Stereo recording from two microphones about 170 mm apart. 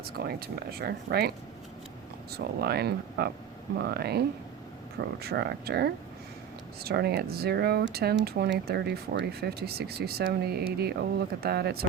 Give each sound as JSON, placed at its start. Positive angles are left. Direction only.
{"t": 0.0, "sound": "speech", "side_deg": -65}
{"t": 2.3, "sound": "speech", "side_deg": -70}